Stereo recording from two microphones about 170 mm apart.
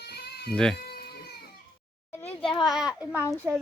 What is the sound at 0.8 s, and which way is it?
Cat, 65° left (ahead or behind).